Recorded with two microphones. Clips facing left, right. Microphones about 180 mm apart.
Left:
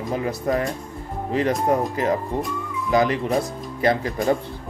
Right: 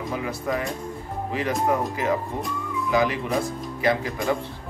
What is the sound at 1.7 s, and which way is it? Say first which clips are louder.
Speech: left 3 dB; 40° left (ahead or behind).